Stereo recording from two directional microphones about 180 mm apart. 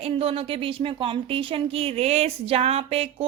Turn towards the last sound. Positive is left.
turn(degrees=-35)  # may be behind; listen again after turning